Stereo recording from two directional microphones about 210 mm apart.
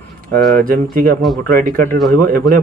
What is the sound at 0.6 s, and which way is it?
Speech, 40° right (ahead or behind).